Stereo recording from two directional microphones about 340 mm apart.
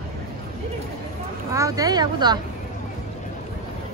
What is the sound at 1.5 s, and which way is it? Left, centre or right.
Speech, centre.